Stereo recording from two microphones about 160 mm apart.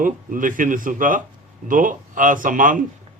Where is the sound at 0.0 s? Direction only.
55° right (ahead or behind).